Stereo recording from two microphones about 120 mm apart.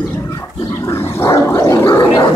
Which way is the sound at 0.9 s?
20° left (ahead or behind).